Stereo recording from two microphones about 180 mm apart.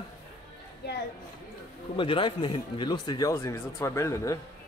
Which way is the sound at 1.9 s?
30° left (ahead or behind).